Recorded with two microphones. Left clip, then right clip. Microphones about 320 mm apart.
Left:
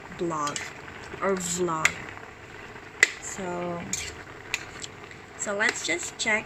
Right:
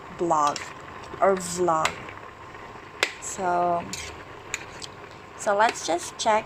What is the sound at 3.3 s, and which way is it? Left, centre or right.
Speech, right.